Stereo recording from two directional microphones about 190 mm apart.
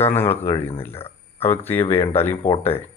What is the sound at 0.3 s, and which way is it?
Speech, 35° left (ahead or behind).